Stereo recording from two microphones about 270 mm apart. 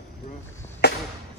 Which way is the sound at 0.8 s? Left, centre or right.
Left.